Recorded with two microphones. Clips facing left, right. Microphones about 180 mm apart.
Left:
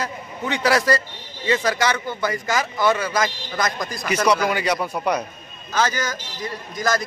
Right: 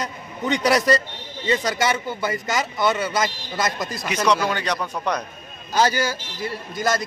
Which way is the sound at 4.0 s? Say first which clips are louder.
Left 2 dB; centre (ahead or behind).